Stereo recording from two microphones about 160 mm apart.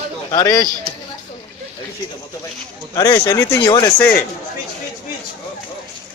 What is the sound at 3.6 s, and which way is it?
Speech, 30° left (ahead or behind).